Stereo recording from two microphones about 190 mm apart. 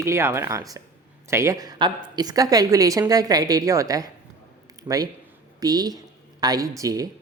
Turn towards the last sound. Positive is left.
turn(degrees=-20)  # may be behind; listen again after turning